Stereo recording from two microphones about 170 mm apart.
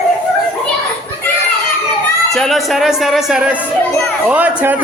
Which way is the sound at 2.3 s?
Centre (ahead or behind).